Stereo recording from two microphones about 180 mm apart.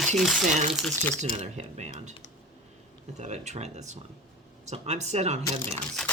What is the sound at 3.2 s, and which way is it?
Speech, 40° right (ahead or behind).